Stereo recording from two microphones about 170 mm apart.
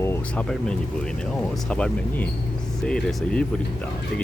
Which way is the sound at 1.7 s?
10° left (ahead or behind).